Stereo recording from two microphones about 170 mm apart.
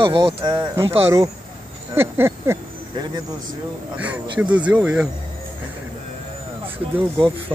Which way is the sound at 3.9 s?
10° right (ahead or behind).